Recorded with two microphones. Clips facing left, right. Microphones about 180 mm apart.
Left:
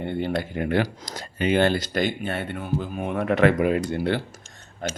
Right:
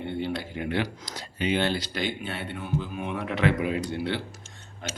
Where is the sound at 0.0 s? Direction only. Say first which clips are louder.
Left 4 dB; 50° left (ahead or behind).